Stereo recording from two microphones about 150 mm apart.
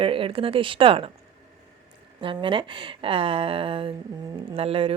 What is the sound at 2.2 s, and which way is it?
Speech, 35° right (ahead or behind).